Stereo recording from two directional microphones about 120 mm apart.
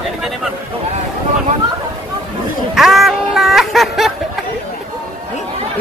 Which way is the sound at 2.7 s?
Centre (ahead or behind).